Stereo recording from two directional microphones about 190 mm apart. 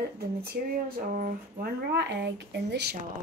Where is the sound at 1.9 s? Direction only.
65° right (ahead or behind).